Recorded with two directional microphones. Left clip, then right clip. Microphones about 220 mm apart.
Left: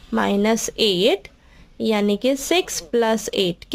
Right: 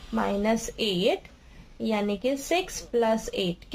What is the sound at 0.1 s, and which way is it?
A woman's voice, 45° left (ahead or behind).